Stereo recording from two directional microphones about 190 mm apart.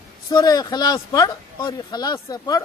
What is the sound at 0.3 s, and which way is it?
Speech, 20° left (ahead or behind).